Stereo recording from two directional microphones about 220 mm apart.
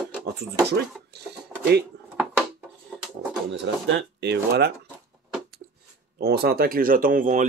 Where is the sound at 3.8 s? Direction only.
55° right (ahead or behind).